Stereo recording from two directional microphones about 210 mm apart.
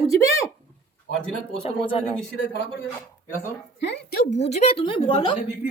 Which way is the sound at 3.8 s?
50° left (ahead or behind).